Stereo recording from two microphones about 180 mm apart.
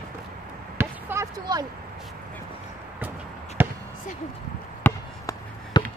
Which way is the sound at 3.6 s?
10° right (ahead or behind).